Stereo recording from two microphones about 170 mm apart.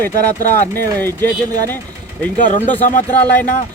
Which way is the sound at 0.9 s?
10° left (ahead or behind).